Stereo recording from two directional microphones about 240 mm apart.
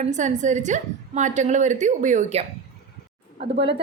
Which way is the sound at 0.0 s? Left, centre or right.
Right.